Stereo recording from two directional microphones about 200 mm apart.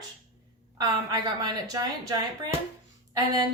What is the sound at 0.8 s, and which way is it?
A woman's voice, 20° right (ahead or behind).